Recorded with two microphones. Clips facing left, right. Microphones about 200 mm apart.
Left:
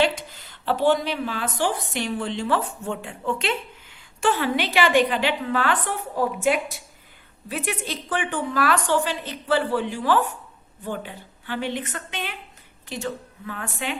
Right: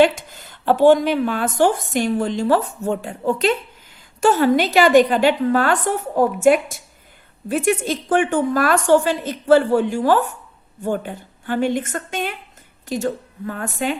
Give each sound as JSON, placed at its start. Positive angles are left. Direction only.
{"t": 0.0, "sound": "a woman's voice", "side_deg": -50}